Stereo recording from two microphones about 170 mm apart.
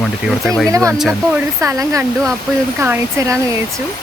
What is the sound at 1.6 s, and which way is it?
Speech, 20° right (ahead or behind).